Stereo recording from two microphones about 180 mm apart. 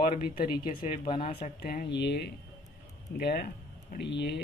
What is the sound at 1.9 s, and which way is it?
Speech, 70° left (ahead or behind).